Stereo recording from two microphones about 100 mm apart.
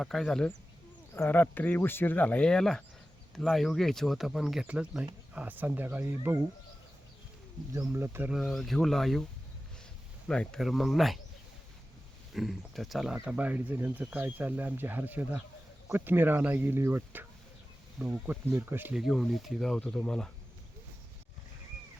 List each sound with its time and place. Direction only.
0.0 s speech: 5° left (ahead or behind)
1.1 s speech: 20° left (ahead or behind); by 4.6 s centre (ahead or behind)
4.6 s speech: 10° right (ahead or behind)
7.7 s speech: 30° right (ahead or behind)
8.3 s speech: centre (ahead or behind)
10.2 s speech: 10° left (ahead or behind)
12.3 s speech: centre (ahead or behind)
13.2 s speech: 15° right (ahead or behind)
18.0 s speech: 5° right (ahead or behind)
18.6 s speech: 20° right (ahead or behind)
18.9 s speech: centre (ahead or behind)